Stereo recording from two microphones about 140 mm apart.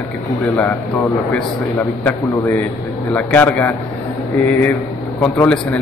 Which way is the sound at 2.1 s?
15° left (ahead or behind).